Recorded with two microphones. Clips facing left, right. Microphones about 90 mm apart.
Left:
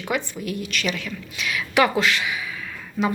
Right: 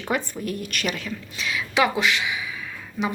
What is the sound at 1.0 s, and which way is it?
A woman's voice, 30° right (ahead or behind).